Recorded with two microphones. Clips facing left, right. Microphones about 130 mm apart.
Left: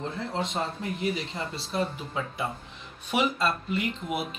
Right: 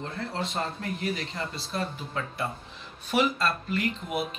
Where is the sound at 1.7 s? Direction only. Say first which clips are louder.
Left 6 dB; 15° left (ahead or behind).